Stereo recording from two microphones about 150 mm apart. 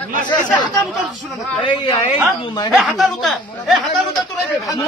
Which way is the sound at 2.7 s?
Centre (ahead or behind).